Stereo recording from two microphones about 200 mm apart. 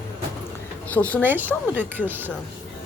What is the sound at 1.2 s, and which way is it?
Speech, 10° right (ahead or behind).